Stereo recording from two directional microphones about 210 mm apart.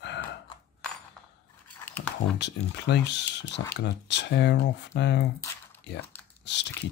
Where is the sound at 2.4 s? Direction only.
55° left (ahead or behind).